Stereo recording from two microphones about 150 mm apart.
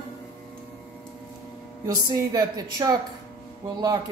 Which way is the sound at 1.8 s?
25° right (ahead or behind).